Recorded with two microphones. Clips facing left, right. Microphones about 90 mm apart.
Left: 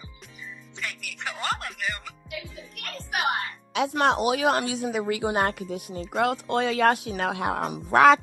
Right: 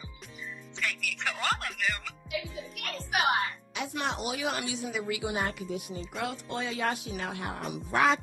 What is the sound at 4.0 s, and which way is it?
Speech, 60° left (ahead or behind).